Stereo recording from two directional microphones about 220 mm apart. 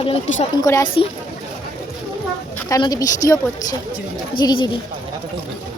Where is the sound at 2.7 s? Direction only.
15° left (ahead or behind).